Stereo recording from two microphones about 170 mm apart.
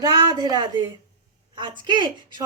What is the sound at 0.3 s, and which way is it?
Speech, 25° right (ahead or behind).